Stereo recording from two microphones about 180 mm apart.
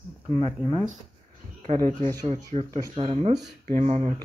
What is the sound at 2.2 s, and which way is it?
Speech, 35° right (ahead or behind).